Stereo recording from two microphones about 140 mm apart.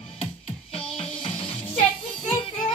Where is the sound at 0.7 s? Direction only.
40° left (ahead or behind).